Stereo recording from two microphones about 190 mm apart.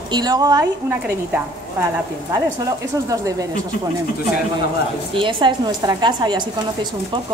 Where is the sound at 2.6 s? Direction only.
20° right (ahead or behind).